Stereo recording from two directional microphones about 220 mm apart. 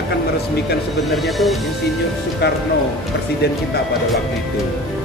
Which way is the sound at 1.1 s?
Centre (ahead or behind).